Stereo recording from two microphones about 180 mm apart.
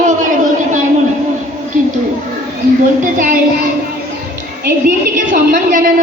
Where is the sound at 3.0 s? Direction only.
50° right (ahead or behind).